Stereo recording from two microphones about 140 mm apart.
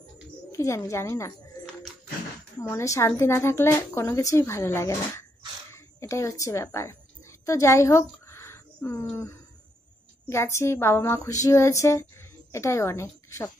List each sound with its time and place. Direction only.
0.5 s a woman's voice: 20° left (ahead or behind)
2.6 s a woman's voice: 20° left (ahead or behind)
7.4 s a sound: 20° left (ahead or behind)
10.3 s a woman's voice: 20° left (ahead or behind)